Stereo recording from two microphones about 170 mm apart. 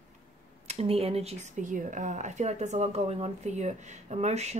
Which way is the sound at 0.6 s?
35° right (ahead or behind).